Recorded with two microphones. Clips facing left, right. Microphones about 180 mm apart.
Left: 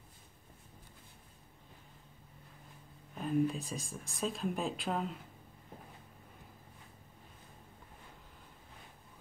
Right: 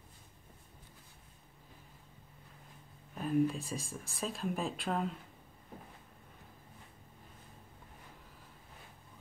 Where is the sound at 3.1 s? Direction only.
Centre (ahead or behind).